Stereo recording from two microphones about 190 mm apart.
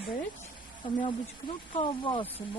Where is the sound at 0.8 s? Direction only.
25° left (ahead or behind).